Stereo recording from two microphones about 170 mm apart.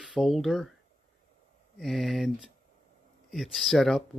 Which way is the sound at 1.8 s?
Centre (ahead or behind).